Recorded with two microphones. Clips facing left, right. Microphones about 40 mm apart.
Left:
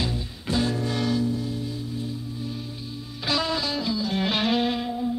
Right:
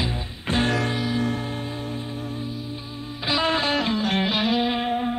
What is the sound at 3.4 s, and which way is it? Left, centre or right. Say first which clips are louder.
Music: right 5 dB; right.